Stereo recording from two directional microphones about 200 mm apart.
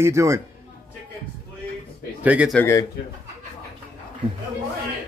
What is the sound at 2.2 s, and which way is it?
Speech, 5° right (ahead or behind).